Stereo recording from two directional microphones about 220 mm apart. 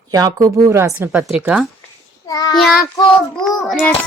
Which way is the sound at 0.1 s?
15° right (ahead or behind).